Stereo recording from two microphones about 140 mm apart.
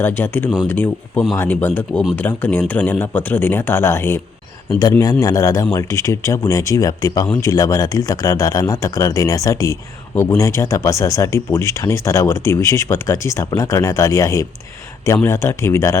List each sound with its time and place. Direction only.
0.0 s speech: 15° left (ahead or behind)